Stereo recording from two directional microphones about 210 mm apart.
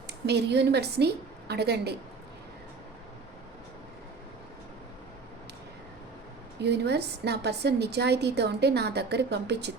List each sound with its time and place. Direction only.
0.1 s a woman's voice: 55° right (ahead or behind)
6.6 s a woman's voice: 55° right (ahead or behind)